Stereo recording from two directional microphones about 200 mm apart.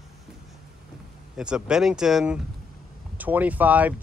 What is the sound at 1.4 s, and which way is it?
Speech, 5° right (ahead or behind).